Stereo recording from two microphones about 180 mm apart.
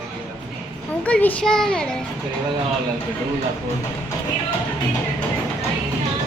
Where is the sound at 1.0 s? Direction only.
10° left (ahead or behind).